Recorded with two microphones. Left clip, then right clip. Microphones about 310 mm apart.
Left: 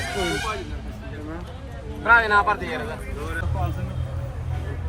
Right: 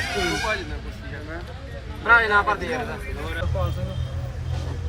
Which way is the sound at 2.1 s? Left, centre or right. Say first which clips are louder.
Even; centre.